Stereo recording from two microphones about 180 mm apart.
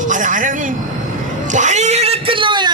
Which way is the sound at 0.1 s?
45° right (ahead or behind).